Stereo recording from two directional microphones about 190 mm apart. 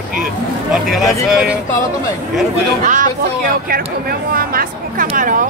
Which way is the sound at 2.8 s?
40° right (ahead or behind).